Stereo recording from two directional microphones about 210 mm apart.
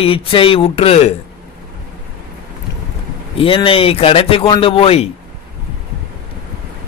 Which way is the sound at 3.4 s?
25° left (ahead or behind).